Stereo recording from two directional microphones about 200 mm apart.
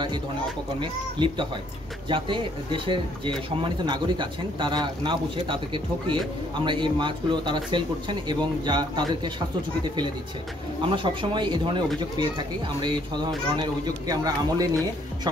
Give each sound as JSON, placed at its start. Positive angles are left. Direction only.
{"t": 1.2, "sound": "speech", "side_deg": -25}
{"t": 10.9, "sound": "speech", "side_deg": -25}